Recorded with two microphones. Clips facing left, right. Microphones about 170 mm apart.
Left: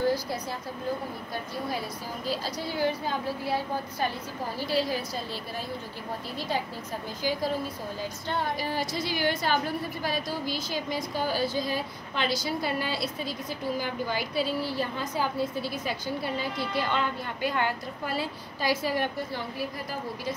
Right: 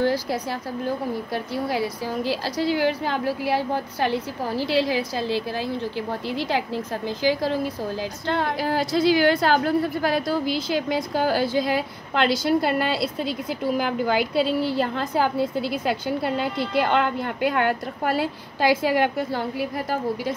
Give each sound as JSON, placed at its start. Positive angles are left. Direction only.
{"t": 0.0, "sound": "a woman's voice", "side_deg": -90}